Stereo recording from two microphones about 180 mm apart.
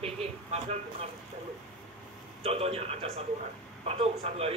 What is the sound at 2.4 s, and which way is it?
Speech, 35° right (ahead or behind).